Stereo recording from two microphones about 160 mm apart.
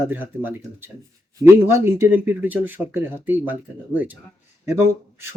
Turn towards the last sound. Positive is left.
turn(degrees=-15)  # may be behind; listen again after turning